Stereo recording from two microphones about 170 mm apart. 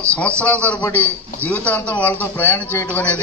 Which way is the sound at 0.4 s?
10° left (ahead or behind).